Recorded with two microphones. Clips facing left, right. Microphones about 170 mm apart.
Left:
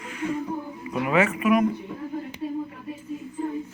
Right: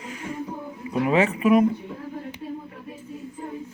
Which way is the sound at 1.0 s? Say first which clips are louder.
Right 2 dB; 35° right (ahead or behind).